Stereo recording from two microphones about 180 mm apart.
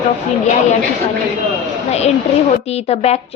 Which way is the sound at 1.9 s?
35° left (ahead or behind).